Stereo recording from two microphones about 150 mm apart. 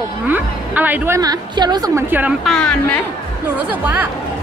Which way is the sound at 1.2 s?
25° right (ahead or behind).